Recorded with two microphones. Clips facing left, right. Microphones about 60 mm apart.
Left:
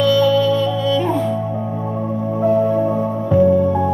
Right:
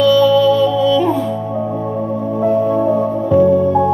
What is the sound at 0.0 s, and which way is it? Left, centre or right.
Music, centre.